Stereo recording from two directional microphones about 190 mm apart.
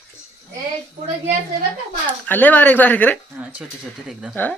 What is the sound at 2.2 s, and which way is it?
Speech, 10° left (ahead or behind).